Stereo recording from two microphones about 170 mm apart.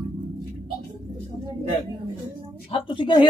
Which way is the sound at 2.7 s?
30° left (ahead or behind).